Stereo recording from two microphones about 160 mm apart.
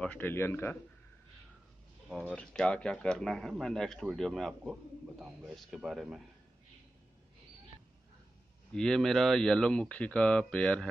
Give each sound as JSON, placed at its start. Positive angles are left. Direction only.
{"t": 0.0, "sound": "a man's voice", "side_deg": 10}
{"t": 2.0, "sound": "speech", "side_deg": 0}
{"t": 8.7, "sound": "speech", "side_deg": 5}